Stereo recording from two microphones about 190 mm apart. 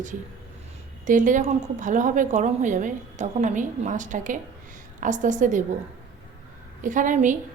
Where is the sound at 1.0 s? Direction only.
40° right (ahead or behind).